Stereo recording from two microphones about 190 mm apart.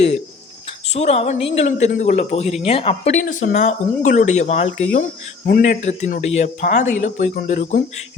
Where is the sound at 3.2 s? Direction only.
40° left (ahead or behind).